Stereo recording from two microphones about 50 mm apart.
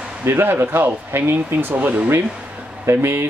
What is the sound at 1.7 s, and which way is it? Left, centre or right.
Speech, right.